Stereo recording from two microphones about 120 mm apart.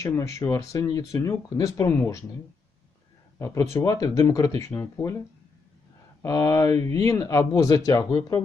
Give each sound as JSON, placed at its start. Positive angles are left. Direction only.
{"t": 0.0, "sound": "speech", "side_deg": 25}
{"t": 3.3, "sound": "speech", "side_deg": 25}
{"t": 6.2, "sound": "speech", "side_deg": 25}